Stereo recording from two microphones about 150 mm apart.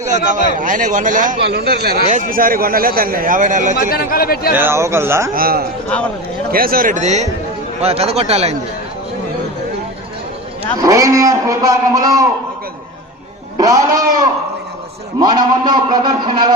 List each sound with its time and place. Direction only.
0.3 s a man's voice: 60° right (ahead or behind); by 2.0 s 90° right
2.0 s a man's voice: 60° right (ahead or behind)
3.8 s speech: 75° left (ahead or behind)
4.5 s speech: 15° right (ahead or behind)
5.3 s a man's voice: 80° right; by 8.5 s 45° right (ahead or behind)
10.8 s a man's voice: 20° right (ahead or behind)
13.6 s a man's voice: 25° right (ahead or behind)